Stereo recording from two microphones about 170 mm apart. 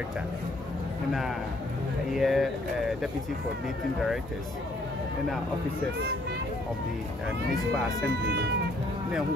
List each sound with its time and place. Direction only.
2.1 s speech: centre (ahead or behind)
8.3 s speech: 70° right (ahead or behind)